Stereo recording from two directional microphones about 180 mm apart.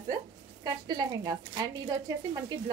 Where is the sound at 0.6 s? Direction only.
25° right (ahead or behind).